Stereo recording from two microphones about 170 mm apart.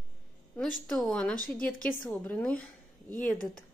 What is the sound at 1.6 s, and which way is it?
Speech, 55° left (ahead or behind).